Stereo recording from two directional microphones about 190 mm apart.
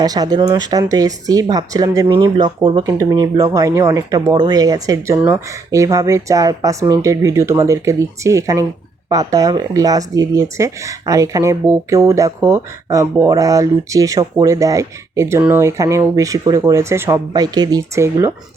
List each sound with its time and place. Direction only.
0.0 s speech: 20° right (ahead or behind)